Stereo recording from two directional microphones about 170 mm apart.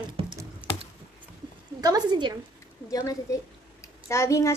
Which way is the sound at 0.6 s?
5° right (ahead or behind).